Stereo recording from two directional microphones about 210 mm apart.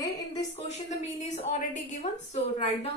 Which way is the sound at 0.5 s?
30° left (ahead or behind).